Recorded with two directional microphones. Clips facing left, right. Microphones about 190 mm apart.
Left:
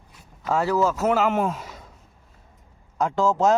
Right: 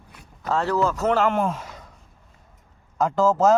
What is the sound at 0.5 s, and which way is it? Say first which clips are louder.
Speech: left 1 dB; 10° left (ahead or behind).